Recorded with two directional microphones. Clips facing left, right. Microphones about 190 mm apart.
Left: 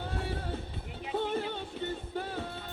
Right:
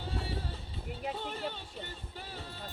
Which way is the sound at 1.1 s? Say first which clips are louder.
Left 8 dB; 55° left (ahead or behind).